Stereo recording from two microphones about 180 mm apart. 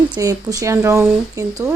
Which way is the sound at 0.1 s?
20° right (ahead or behind).